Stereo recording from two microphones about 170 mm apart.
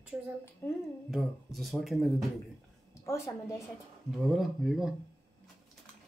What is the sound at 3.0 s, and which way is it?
Speech, 15° left (ahead or behind).